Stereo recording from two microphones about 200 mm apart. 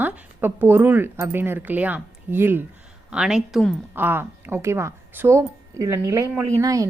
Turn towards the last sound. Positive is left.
turn(degrees=-15)  # may be behind; listen again after turning